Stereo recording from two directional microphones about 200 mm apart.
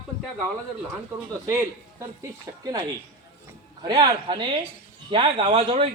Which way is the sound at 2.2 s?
20° right (ahead or behind).